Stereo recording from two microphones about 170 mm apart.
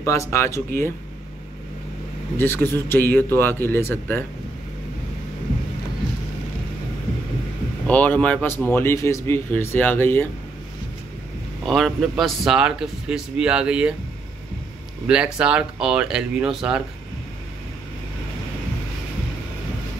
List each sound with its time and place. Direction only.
0.0 s a man's voice: 20° left (ahead or behind)
2.3 s a man's voice: 15° left (ahead or behind)
7.8 s a man's voice: 10° left (ahead or behind)
11.6 s a man's voice: centre (ahead or behind)
15.0 s a man's voice: 5° right (ahead or behind)